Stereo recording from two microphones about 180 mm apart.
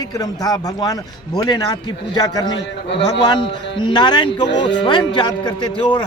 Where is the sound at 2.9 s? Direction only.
75° left (ahead or behind).